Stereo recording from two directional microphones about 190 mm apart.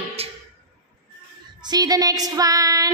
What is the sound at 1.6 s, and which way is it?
A woman's voice, 20° right (ahead or behind).